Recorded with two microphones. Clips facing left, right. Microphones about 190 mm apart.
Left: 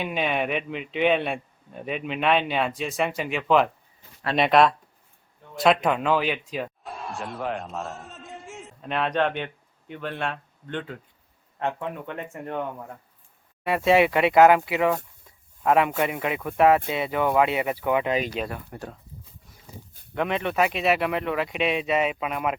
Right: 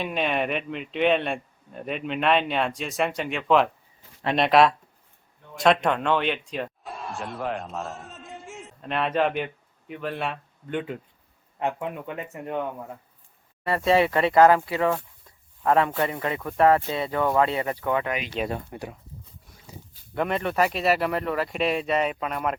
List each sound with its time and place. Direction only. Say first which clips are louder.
0.0 s a man's voice: even; centre (ahead or behind)
13.7 s speech: left 1 dB; 5° left (ahead or behind)
18.4 s speech: right 3 dB; 20° right (ahead or behind)
20.1 s speech: even; centre (ahead or behind)